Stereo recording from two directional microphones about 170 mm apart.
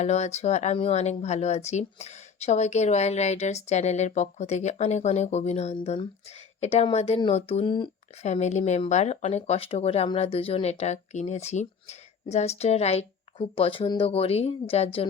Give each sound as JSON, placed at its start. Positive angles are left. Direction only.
{"t": 0.0, "sound": "speech", "side_deg": 40}
{"t": 8.2, "sound": "speech", "side_deg": 40}